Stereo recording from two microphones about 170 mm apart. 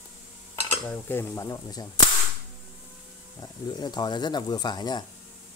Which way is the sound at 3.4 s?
25° left (ahead or behind).